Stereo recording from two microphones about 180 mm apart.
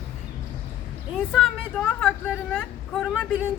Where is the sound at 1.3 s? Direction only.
5° left (ahead or behind).